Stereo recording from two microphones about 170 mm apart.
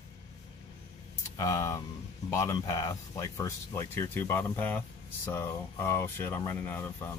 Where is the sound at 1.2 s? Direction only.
20° left (ahead or behind).